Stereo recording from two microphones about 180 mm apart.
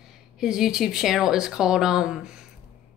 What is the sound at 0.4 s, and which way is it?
Speech, 5° right (ahead or behind).